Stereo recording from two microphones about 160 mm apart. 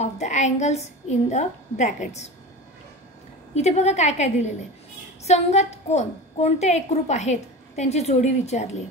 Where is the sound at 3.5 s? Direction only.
45° left (ahead or behind).